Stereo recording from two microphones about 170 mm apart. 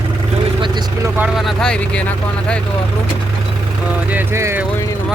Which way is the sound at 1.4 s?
Centre (ahead or behind).